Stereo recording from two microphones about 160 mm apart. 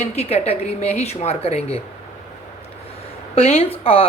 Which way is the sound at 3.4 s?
40° left (ahead or behind).